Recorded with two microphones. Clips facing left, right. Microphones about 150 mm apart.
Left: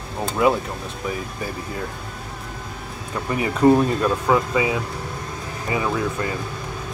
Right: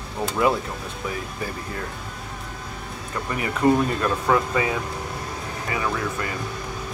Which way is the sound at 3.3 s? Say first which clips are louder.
Left 4 dB; 20° left (ahead or behind).